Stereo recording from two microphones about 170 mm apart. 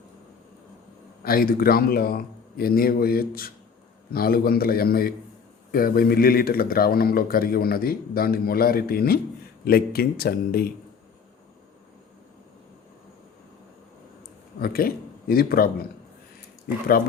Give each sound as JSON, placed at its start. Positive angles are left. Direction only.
{"t": 1.2, "sound": "speech", "side_deg": 60}
{"t": 14.6, "sound": "speech", "side_deg": 60}